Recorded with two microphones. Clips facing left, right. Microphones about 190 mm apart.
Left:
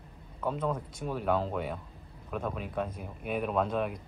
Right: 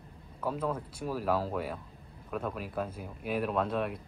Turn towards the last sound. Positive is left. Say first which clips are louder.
# left 1 dB
turn(degrees=0)  # may be behind; listen again after turning